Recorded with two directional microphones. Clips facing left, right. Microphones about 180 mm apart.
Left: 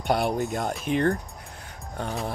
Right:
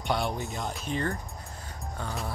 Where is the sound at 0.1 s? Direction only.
60° left (ahead or behind).